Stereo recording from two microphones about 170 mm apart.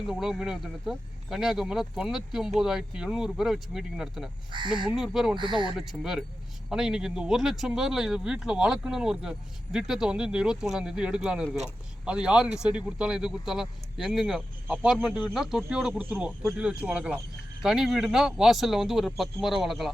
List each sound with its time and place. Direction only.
0.1 s speech: centre (ahead or behind)
4.5 s speech: 30° right (ahead or behind)
4.9 s speech: centre (ahead or behind)
5.4 s speech: 30° right (ahead or behind)
5.7 s speech: centre (ahead or behind)